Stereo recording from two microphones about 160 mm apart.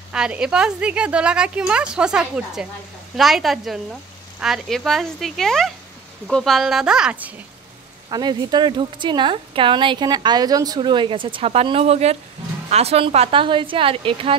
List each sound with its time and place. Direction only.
0.1 s a woman's voice: 5° right (ahead or behind)
8.1 s a woman's voice: 25° right (ahead or behind)